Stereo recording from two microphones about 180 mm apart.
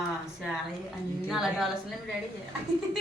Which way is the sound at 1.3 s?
Centre (ahead or behind).